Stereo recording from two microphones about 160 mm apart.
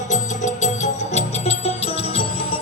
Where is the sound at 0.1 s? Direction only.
45° left (ahead or behind).